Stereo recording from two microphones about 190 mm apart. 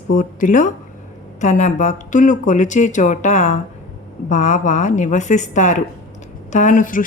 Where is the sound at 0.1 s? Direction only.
45° left (ahead or behind).